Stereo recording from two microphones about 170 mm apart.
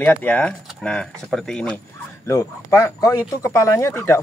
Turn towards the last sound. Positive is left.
turn(degrees=15)  # may be behind; listen again after turning